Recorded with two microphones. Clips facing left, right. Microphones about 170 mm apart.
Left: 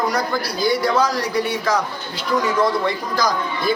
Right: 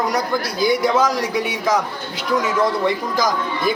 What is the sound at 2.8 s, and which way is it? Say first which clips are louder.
Speech: right 2 dB; 20° right (ahead or behind).